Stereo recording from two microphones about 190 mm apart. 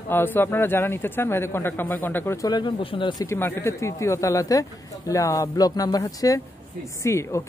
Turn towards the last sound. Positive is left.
turn(degrees=15)  # may be behind; listen again after turning